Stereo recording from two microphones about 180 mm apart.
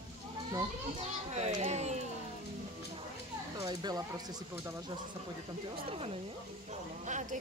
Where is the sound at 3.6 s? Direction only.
25° right (ahead or behind).